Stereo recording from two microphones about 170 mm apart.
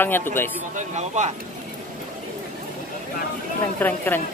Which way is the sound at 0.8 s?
45° right (ahead or behind).